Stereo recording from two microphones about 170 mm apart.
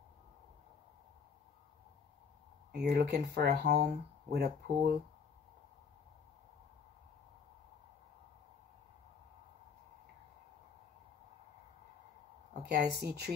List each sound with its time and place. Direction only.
2.7 s speech: 75° right (ahead or behind)
12.6 s speech: 75° right (ahead or behind)